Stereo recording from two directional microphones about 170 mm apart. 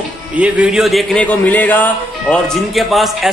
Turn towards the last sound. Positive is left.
turn(degrees=0)  # may be behind; listen again after turning